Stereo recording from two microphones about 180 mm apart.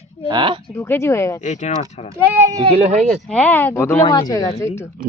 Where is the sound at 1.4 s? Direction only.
40° left (ahead or behind).